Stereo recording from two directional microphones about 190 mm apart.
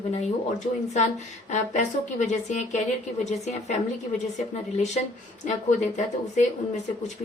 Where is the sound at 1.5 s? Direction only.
40° left (ahead or behind).